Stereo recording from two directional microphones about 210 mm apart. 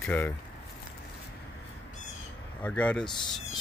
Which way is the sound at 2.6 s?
5° left (ahead or behind).